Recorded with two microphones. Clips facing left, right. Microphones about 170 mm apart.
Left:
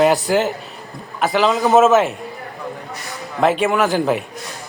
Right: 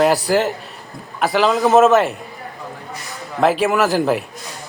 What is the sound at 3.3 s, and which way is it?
Speech, centre (ahead or behind).